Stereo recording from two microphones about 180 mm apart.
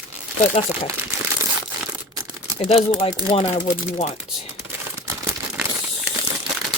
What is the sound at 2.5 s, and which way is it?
Speech, 35° left (ahead or behind).